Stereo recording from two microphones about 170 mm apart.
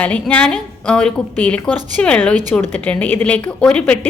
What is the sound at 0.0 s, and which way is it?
A woman's voice, 10° left (ahead or behind).